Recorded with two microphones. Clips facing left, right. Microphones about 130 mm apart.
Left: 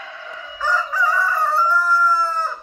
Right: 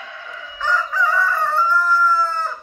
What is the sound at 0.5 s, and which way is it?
Fowl, 5° left (ahead or behind).